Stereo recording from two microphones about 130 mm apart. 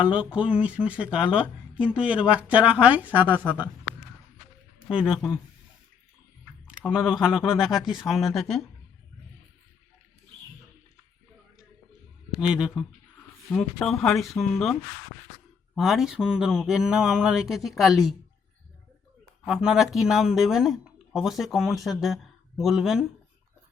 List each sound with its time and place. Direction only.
0.0 s speech: 10° right (ahead or behind)
4.9 s speech: 40° left (ahead or behind)
6.4 s typing: 5° right (ahead or behind)
6.9 s speech: centre (ahead or behind)
12.4 s speech: 5° right (ahead or behind)
13.5 s speech: 5° left (ahead or behind)
19.5 s speech: 5° right (ahead or behind)